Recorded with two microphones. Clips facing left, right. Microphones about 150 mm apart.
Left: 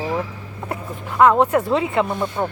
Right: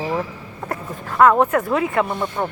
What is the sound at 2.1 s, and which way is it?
Speech, 5° left (ahead or behind).